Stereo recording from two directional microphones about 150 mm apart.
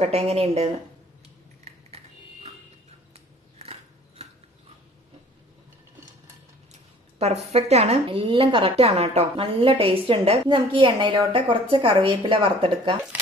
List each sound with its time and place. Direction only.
0.0 s speech: 45° right (ahead or behind)
3.1 s a sound: 40° right (ahead or behind)
7.4 s a woman's voice: 45° right (ahead or behind)